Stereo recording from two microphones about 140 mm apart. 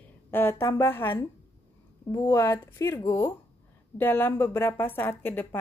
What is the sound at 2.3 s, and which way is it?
A woman's voice, 15° left (ahead or behind).